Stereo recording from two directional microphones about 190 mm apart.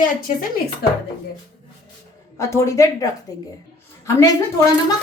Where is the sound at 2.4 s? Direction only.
15° left (ahead or behind).